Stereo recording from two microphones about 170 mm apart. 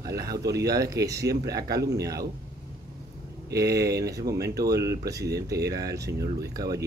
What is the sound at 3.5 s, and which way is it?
Speech, 20° right (ahead or behind).